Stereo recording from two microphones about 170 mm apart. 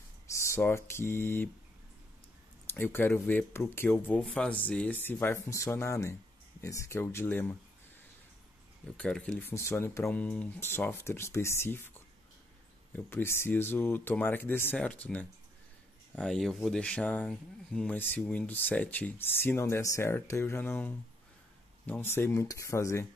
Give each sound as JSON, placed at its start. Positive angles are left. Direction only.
{"t": 0.3, "sound": "speech", "side_deg": 15}
{"t": 2.6, "sound": "speech", "side_deg": 15}
{"t": 8.8, "sound": "speech", "side_deg": 5}
{"t": 12.9, "sound": "speech", "side_deg": 15}